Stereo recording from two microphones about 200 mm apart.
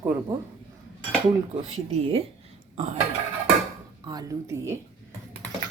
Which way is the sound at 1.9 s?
30° right (ahead or behind).